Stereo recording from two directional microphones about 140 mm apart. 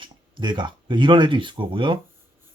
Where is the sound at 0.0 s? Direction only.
35° right (ahead or behind).